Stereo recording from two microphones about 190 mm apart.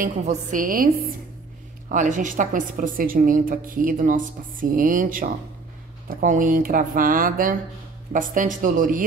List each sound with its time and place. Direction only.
0.0 s a woman's voice: 45° right (ahead or behind)
1.9 s a woman's voice: 40° right (ahead or behind)